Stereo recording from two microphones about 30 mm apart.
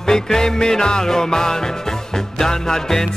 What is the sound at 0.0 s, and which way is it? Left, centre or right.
Music, left.